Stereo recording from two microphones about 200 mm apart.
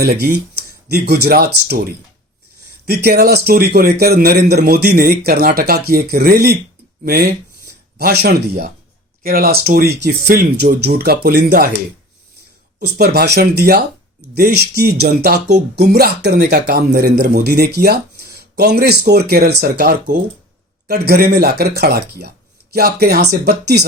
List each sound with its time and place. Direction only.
0.0 s a man's voice: 50° right (ahead or behind)
13.0 s a man's voice: 50° right (ahead or behind)